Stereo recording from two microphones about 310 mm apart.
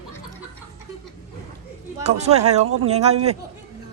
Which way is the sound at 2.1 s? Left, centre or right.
Right.